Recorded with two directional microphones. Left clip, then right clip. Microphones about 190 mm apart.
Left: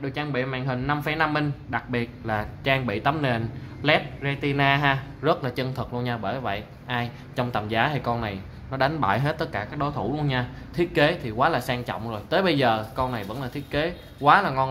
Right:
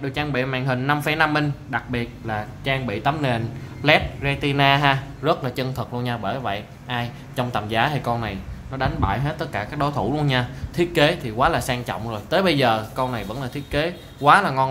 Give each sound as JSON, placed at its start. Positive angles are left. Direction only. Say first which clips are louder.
{"t": 0.0, "sound": "speech", "louder": "right 4 dB", "side_deg": 0}
{"t": 8.7, "sound": "a man's voice", "louder": "left 1 dB", "side_deg": 20}
{"t": 9.5, "sound": "speech", "louder": "right 4 dB", "side_deg": 0}